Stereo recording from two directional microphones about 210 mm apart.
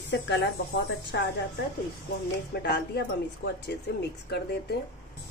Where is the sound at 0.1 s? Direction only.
55° left (ahead or behind).